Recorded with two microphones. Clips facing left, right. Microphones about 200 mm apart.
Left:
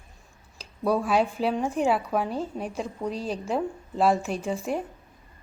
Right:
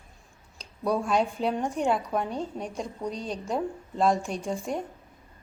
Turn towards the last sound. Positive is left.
turn(degrees=5)  # may be behind; listen again after turning